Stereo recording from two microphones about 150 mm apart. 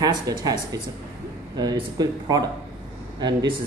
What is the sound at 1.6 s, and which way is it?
Mantra, 25° right (ahead or behind).